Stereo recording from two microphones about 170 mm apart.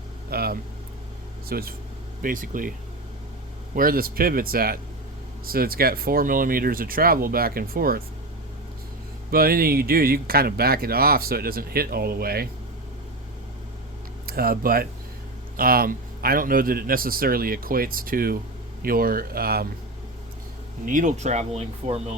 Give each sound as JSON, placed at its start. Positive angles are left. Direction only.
{"t": 0.3, "sound": "speech", "side_deg": -65}
{"t": 3.8, "sound": "speech", "side_deg": -60}
{"t": 9.3, "sound": "speech", "side_deg": -60}
{"t": 14.3, "sound": "speech", "side_deg": -60}
{"t": 20.8, "sound": "speech", "side_deg": -50}